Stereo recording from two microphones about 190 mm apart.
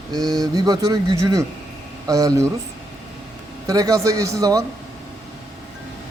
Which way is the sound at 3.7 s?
20° right (ahead or behind).